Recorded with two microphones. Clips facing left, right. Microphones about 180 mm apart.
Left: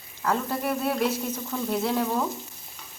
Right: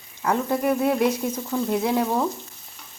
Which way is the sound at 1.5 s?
15° right (ahead or behind).